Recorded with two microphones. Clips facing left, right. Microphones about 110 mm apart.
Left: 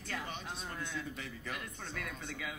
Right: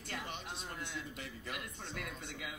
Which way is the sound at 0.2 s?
30° left (ahead or behind).